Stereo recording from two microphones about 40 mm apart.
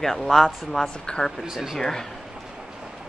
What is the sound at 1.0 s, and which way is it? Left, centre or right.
Speech, left.